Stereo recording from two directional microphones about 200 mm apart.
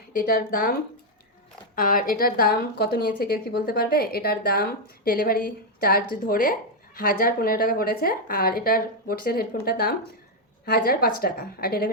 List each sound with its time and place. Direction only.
0.1 s speech: 50° left (ahead or behind)